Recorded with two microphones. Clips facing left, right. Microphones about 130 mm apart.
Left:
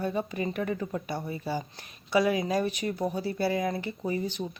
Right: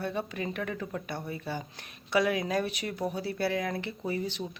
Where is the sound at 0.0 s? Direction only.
5° left (ahead or behind).